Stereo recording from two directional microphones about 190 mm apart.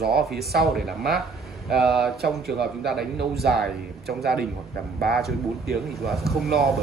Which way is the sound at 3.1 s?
55° right (ahead or behind).